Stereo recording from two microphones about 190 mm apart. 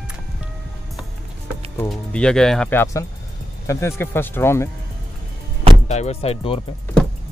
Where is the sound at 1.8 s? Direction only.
5° left (ahead or behind).